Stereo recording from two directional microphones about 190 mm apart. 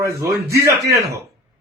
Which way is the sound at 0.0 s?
15° right (ahead or behind).